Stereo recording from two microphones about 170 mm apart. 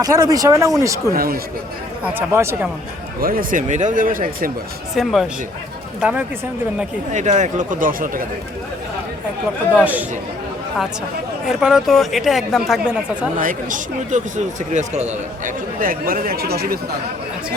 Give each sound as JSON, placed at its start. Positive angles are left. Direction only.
{"t": 0.0, "sound": "speech", "side_deg": -20}
{"t": 1.1, "sound": "speech", "side_deg": -60}
{"t": 2.1, "sound": "speech", "side_deg": -15}
{"t": 3.2, "sound": "speech", "side_deg": -60}
{"t": 5.0, "sound": "speech", "side_deg": 0}
{"t": 7.1, "sound": "speech", "side_deg": -45}
{"t": 9.8, "sound": "speech", "side_deg": -10}
{"t": 11.4, "sound": "speech", "side_deg": -5}
{"t": 13.4, "sound": "speech", "side_deg": -50}